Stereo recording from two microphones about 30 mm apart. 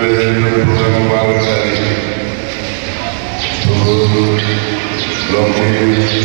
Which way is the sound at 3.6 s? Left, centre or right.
Left.